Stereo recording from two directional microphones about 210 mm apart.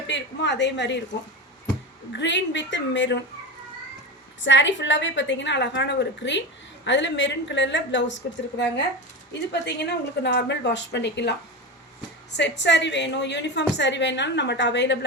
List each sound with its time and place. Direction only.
0.1 s a woman's voice: 55° left (ahead or behind)
2.1 s a woman's voice: 60° left (ahead or behind)
4.4 s a woman's voice: 60° left (ahead or behind)